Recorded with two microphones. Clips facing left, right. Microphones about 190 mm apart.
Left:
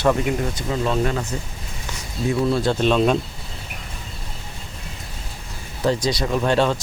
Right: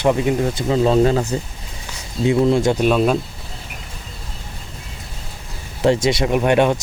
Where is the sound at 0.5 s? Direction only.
35° right (ahead or behind).